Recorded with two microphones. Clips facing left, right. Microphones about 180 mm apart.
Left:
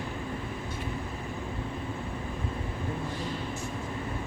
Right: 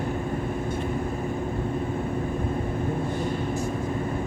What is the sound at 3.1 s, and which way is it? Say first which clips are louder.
Vehicle: right 7 dB; 55° right (ahead or behind).